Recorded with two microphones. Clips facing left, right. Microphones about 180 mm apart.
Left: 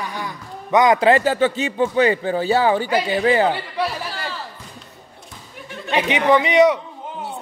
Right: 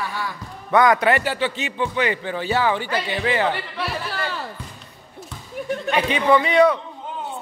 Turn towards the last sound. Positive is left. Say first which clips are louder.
# left 1 dB
turn(degrees=15)  # may be behind; listen again after turning